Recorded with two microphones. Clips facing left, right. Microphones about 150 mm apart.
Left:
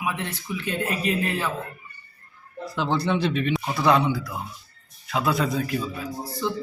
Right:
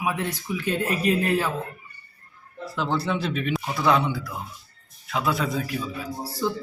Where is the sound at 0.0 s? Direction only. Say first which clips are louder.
Right 2 dB; 5° right (ahead or behind).